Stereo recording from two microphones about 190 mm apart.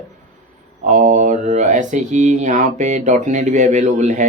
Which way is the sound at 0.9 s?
40° right (ahead or behind).